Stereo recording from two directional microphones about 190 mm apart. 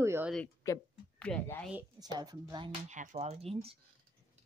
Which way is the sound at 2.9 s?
40° right (ahead or behind).